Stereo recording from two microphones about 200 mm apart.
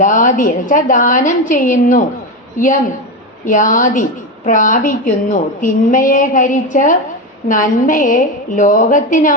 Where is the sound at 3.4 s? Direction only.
40° left (ahead or behind).